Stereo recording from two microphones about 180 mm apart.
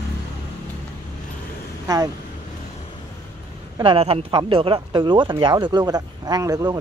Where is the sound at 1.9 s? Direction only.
20° right (ahead or behind).